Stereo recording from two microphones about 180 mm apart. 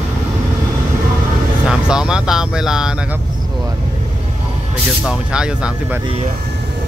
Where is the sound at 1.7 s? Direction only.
5° right (ahead or behind).